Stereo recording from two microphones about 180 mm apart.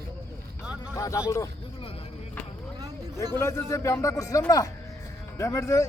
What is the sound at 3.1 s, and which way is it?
A man's voice, 15° left (ahead or behind).